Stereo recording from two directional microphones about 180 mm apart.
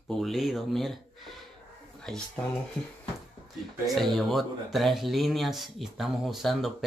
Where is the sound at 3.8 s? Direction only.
Centre (ahead or behind).